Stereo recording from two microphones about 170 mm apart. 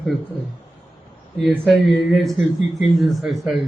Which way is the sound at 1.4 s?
Centre (ahead or behind).